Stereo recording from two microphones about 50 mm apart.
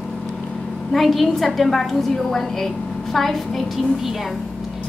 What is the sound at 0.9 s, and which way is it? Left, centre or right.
A woman's voice, centre.